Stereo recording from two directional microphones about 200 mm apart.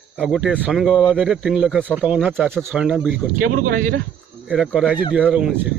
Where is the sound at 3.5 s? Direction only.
45° right (ahead or behind).